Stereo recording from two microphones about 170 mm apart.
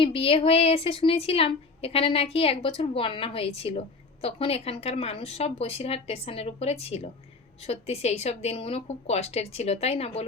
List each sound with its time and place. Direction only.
0.0 s a woman's voice: 35° left (ahead or behind)